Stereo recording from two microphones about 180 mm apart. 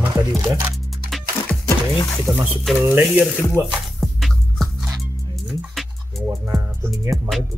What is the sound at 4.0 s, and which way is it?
Music, centre (ahead or behind).